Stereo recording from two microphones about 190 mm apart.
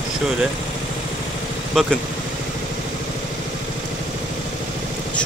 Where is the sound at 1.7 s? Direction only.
Centre (ahead or behind).